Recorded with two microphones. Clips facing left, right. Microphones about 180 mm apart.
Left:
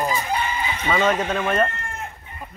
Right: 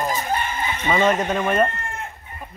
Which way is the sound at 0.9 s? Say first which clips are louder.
Right 2 dB; 10° right (ahead or behind).